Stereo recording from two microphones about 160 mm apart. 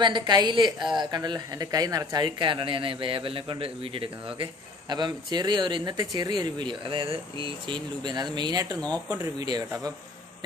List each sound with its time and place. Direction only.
0.0 s speech: 25° right (ahead or behind)